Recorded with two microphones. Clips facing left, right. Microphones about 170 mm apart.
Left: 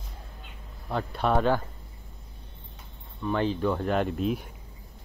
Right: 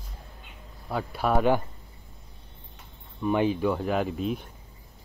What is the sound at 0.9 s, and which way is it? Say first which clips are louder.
Speech: even; 5° right (ahead or behind).